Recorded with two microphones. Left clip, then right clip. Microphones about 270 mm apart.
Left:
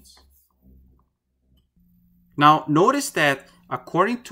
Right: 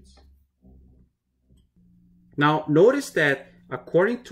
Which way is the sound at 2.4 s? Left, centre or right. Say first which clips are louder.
Left 2 dB; centre.